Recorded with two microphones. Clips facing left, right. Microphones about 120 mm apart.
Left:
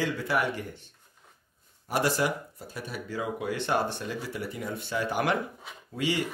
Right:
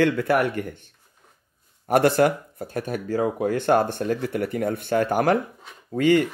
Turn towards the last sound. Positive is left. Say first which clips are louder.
# right 11 dB
turn(degrees=-50)  # may be behind; listen again after turning